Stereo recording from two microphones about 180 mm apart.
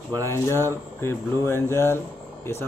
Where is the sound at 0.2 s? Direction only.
15° left (ahead or behind).